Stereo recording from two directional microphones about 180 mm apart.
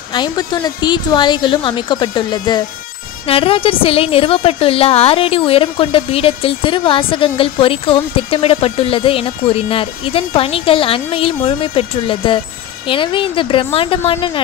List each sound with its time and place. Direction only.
0.1 s a woman's voice: 25° left (ahead or behind)